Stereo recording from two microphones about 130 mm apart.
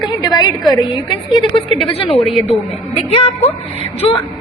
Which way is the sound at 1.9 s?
50° left (ahead or behind).